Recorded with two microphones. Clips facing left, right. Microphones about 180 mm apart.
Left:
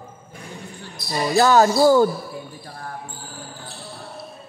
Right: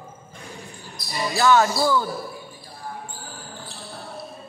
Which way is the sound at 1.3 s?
40° left (ahead or behind).